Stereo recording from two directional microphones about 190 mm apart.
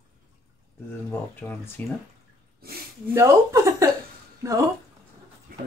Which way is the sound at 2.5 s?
55° right (ahead or behind).